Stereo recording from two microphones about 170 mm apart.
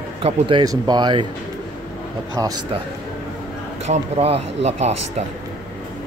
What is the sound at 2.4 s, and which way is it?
Speech, 20° right (ahead or behind).